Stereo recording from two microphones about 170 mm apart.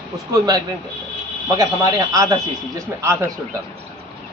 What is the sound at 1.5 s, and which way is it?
Speech, 20° right (ahead or behind).